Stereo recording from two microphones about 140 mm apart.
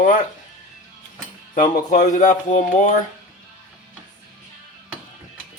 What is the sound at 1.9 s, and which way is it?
Speech, 60° left (ahead or behind).